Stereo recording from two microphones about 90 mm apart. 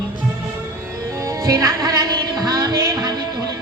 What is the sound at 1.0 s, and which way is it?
Music, 35° right (ahead or behind).